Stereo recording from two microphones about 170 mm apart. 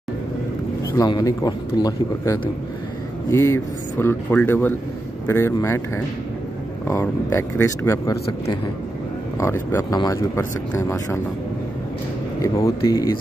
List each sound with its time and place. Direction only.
0.9 s a man's voice: 25° left (ahead or behind)
9.4 s speech: 15° left (ahead or behind)
12.4 s a man's voice: 20° left (ahead or behind)